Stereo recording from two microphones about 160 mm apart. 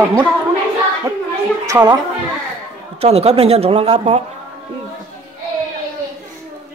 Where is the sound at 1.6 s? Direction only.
20° right (ahead or behind).